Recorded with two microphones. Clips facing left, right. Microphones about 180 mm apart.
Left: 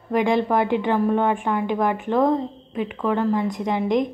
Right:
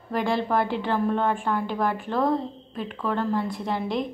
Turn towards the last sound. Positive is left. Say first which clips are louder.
# left 6 dB
turn(degrees=15)  # may be behind; listen again after turning